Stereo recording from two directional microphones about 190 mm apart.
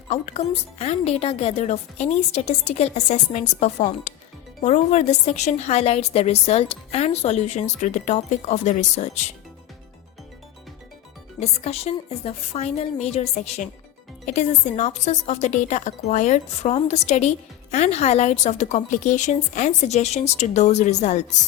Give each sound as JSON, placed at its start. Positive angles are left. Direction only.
{"t": 0.1, "sound": "a woman's voice", "side_deg": 35}
{"t": 11.3, "sound": "a woman's voice", "side_deg": 35}